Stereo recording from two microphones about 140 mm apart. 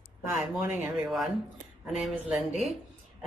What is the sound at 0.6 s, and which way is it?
A woman's voice, 5° right (ahead or behind).